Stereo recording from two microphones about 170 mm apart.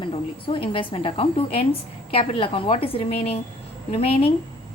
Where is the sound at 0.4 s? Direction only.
30° left (ahead or behind).